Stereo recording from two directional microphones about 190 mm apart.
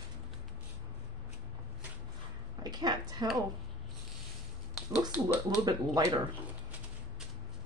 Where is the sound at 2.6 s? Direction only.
20° right (ahead or behind).